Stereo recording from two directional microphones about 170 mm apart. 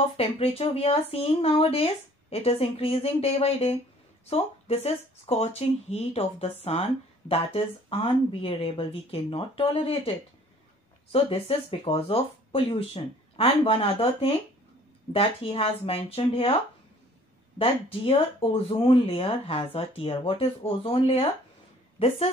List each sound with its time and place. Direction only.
0.2 s speech: 35° left (ahead or behind)
17.6 s a woman's voice: 35° left (ahead or behind)